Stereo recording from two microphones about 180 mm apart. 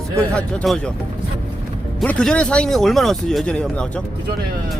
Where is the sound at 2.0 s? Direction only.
5° left (ahead or behind).